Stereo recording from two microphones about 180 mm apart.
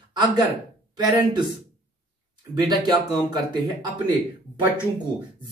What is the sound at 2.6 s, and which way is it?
Speech, 25° right (ahead or behind).